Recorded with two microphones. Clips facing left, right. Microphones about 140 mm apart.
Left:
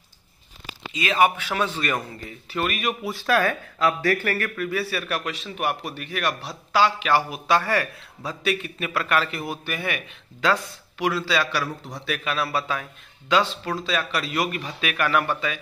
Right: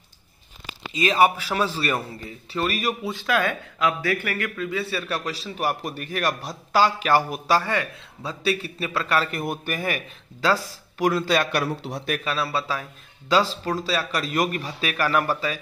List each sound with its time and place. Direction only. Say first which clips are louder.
1.4 s speech: right 1 dB; 35° right (ahead or behind)
3.1 s speech: left 3 dB; 15° right (ahead or behind); by 7.6 s 40° right (ahead or behind)
7.6 s speech: left 2 dB; 20° right (ahead or behind)
9.3 s speech: right 2 dB; 50° right (ahead or behind)
12.3 s speech: left 2 dB; 30° right (ahead or behind)